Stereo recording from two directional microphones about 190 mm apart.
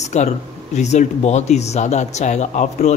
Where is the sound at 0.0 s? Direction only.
35° left (ahead or behind).